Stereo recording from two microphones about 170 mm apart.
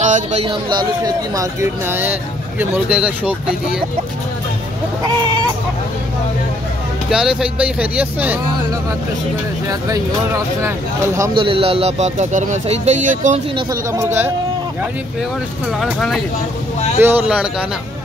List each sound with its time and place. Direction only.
0.0 s speech: 45° right (ahead or behind); by 3.5 s 5° right (ahead or behind)
7.1 s speech: 5° right (ahead or behind)
9.7 s speech: 20° right (ahead or behind)
11.3 s speech: 30° right (ahead or behind); by 13.4 s 45° right (ahead or behind)
14.0 s speech: 10° right (ahead or behind)
15.8 s speech: centre (ahead or behind)
17.0 s speech: 10° right (ahead or behind)